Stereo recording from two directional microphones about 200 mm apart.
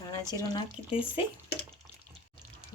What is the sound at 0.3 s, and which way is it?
Speech, 20° left (ahead or behind).